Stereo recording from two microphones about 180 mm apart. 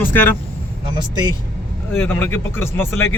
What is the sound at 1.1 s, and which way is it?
Speech, 25° right (ahead or behind).